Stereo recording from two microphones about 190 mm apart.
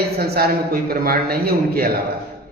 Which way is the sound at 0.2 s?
55° right (ahead or behind).